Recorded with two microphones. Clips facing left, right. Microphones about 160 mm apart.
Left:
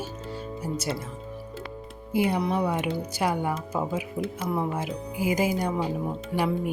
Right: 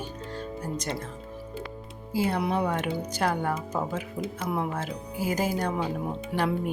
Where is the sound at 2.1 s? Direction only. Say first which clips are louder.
Left 2 dB; 15° left (ahead or behind).